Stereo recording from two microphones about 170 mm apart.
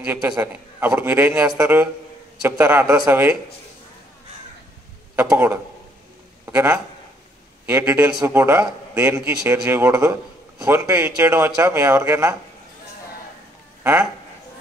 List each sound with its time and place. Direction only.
0.0 s a man's voice: 10° right (ahead or behind)
5.1 s a man's voice: 15° right (ahead or behind)